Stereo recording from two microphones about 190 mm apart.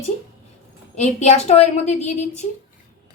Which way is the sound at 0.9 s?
35° left (ahead or behind).